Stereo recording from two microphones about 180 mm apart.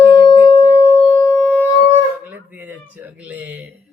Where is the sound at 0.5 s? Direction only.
15° left (ahead or behind).